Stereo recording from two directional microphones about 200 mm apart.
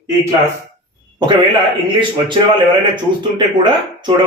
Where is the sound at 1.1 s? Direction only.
20° right (ahead or behind).